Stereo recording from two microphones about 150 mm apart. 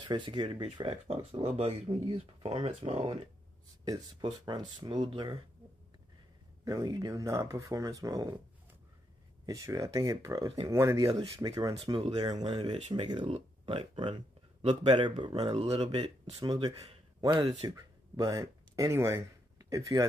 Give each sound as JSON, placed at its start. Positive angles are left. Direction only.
{"t": 0.0, "sound": "speech", "side_deg": -30}
{"t": 3.8, "sound": "speech", "side_deg": -30}
{"t": 6.6, "sound": "speech", "side_deg": -25}
{"t": 9.5, "sound": "speech", "side_deg": -20}